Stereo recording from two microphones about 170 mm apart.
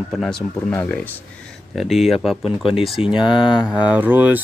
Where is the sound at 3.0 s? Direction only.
30° left (ahead or behind).